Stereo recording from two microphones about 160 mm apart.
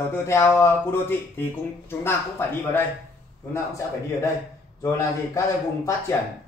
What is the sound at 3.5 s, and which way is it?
A man's voice, 20° left (ahead or behind).